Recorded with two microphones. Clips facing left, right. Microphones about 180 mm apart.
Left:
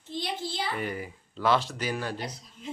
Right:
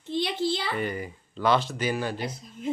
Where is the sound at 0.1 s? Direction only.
70° right (ahead or behind).